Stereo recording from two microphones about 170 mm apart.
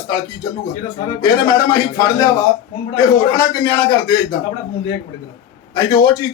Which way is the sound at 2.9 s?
20° left (ahead or behind).